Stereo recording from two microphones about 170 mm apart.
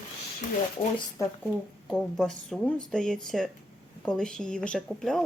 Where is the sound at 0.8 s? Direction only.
35° left (ahead or behind).